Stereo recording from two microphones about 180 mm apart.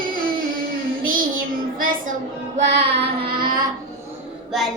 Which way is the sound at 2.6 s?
70° right (ahead or behind).